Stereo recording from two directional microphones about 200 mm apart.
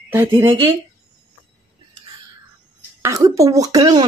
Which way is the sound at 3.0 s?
15° right (ahead or behind).